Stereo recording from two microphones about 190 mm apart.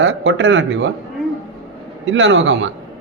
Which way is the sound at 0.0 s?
80° right.